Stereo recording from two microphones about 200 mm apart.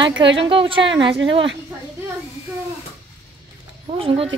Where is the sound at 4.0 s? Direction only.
25° right (ahead or behind).